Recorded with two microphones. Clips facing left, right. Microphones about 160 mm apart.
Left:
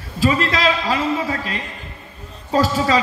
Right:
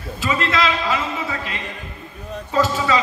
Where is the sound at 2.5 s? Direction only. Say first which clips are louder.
Left 2 dB; 35° left (ahead or behind).